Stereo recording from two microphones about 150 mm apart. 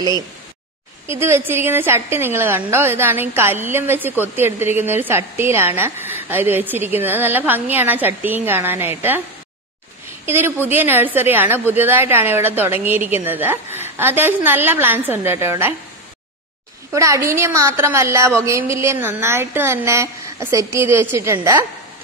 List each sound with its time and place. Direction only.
1.0 s a woman's voice: 15° right (ahead or behind)
10.2 s a woman's voice: 15° right (ahead or behind)
16.9 s a woman's voice: 20° right (ahead or behind)